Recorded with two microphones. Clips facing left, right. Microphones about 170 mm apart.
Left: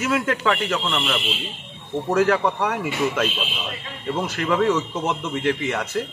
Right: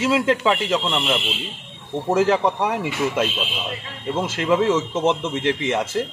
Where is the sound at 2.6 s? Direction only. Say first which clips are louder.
Right 1 dB; 10° right (ahead or behind).